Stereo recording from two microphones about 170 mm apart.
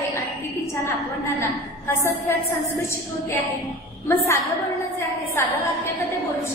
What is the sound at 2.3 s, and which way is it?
Speech, 15° left (ahead or behind).